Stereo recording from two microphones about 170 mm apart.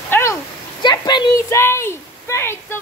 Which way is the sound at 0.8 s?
25° left (ahead or behind).